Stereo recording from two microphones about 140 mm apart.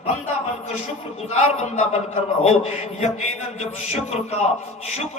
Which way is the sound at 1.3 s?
50° left (ahead or behind).